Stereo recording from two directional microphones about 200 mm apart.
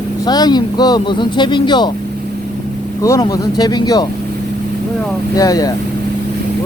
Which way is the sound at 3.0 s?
15° left (ahead or behind).